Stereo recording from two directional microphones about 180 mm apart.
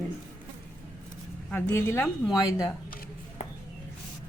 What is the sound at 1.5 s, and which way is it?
Speech, 10° left (ahead or behind).